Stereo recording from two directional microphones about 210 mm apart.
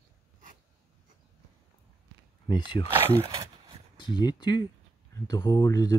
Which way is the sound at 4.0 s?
20° left (ahead or behind).